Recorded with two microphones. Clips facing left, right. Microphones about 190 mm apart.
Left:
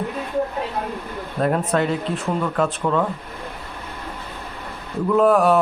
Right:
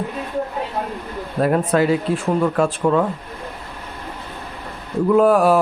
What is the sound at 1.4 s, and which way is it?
A man's voice, 5° right (ahead or behind).